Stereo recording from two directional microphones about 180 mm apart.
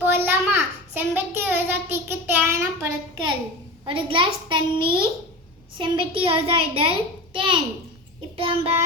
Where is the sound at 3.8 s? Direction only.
30° right (ahead or behind).